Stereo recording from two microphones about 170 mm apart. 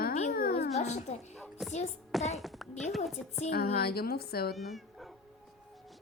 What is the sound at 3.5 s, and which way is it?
Speech, 65° left (ahead or behind).